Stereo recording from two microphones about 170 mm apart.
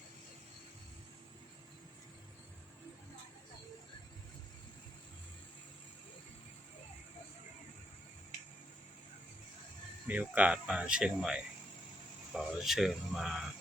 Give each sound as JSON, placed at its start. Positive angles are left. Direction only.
{"t": 10.1, "sound": "speech", "side_deg": -10}